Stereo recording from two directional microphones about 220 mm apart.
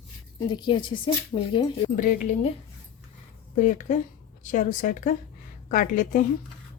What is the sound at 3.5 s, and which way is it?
A woman's voice, 35° left (ahead or behind).